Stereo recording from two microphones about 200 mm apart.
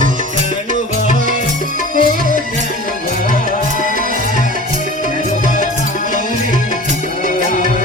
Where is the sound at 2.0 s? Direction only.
45° left (ahead or behind).